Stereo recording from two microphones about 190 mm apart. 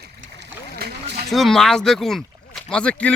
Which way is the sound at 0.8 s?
55° right (ahead or behind).